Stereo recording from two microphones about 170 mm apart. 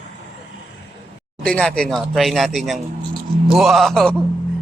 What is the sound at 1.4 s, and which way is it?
Speech, 5° left (ahead or behind).